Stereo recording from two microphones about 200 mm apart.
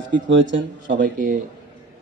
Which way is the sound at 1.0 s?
45° right (ahead or behind).